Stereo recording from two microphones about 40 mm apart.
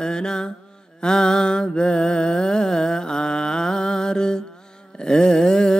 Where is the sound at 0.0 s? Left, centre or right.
Centre.